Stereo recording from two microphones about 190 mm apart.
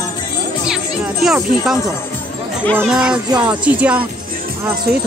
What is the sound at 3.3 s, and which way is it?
Music, 20° right (ahead or behind).